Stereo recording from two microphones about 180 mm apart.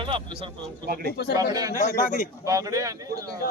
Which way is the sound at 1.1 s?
65° left (ahead or behind).